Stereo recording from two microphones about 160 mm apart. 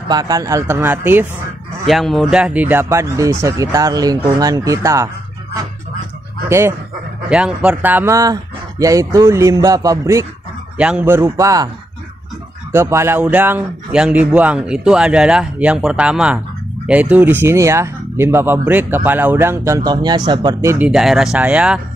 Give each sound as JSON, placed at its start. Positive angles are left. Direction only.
{"t": 0.1, "sound": "speech", "side_deg": -25}
{"t": 1.9, "sound": "speech", "side_deg": 0}
{"t": 7.2, "sound": "speech", "side_deg": -5}
{"t": 10.8, "sound": "speech", "side_deg": -10}
{"t": 12.7, "sound": "speech", "side_deg": -15}
{"t": 20.8, "sound": "speech", "side_deg": -5}